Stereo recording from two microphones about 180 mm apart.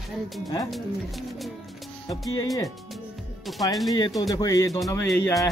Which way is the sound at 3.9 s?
25° left (ahead or behind).